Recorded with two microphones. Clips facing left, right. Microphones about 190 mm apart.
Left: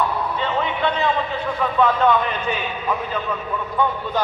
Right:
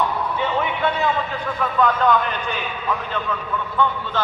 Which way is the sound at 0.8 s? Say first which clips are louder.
Left 1 dB; 5° right (ahead or behind).